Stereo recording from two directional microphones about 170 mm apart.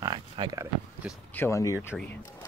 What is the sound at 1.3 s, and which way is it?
Speech, 15° left (ahead or behind).